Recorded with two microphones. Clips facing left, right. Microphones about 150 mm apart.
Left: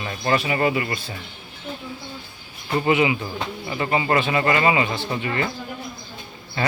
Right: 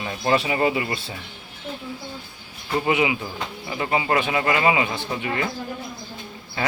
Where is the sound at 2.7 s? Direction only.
10° right (ahead or behind).